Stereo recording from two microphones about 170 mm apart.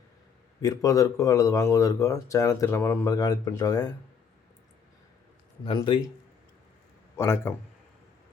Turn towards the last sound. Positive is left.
turn(degrees=15)  # may be behind; listen again after turning